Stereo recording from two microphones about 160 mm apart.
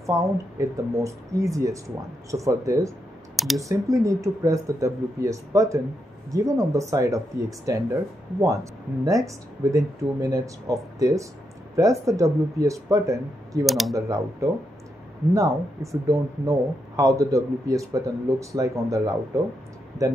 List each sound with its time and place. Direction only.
0.0 s speech: 20° right (ahead or behind)
3.3 s speech: centre (ahead or behind)
3.6 s speech: 20° right (ahead or behind)
13.7 s speech: centre (ahead or behind)
13.9 s speech: 20° right (ahead or behind)